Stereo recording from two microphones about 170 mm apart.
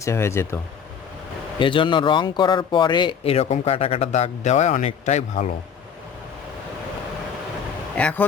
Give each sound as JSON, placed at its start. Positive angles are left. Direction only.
{"t": 0.0, "sound": "speech", "side_deg": 15}
{"t": 1.5, "sound": "a man's voice", "side_deg": 30}
{"t": 7.9, "sound": "speech", "side_deg": 10}